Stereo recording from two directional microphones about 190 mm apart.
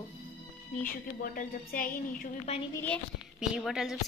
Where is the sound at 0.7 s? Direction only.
50° left (ahead or behind).